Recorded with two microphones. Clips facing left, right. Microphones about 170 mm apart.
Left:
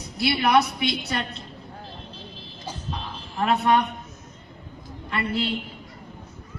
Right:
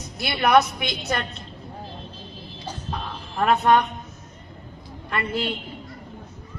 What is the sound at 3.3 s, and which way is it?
Speech, 50° right (ahead or behind).